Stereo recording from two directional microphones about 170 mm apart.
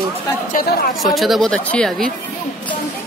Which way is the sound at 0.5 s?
60° left (ahead or behind).